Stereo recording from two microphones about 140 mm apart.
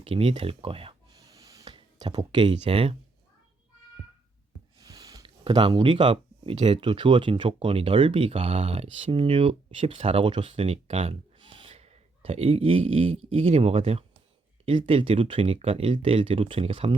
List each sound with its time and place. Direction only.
0.0 s speech: 40° right (ahead or behind)
1.1 s snort: 25° right (ahead or behind)
1.7 s speech: 40° right (ahead or behind)
4.8 s a sound: 25° right (ahead or behind)
5.2 s speech: 40° right (ahead or behind)